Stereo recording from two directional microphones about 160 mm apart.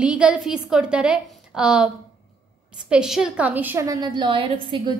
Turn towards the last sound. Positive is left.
turn(degrees=-30)  # may be behind; listen again after turning